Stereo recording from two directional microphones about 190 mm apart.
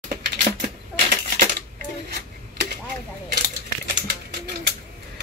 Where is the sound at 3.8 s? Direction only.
60° right (ahead or behind).